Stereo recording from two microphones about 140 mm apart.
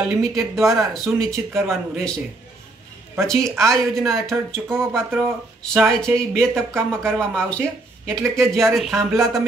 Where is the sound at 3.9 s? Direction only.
Centre (ahead or behind).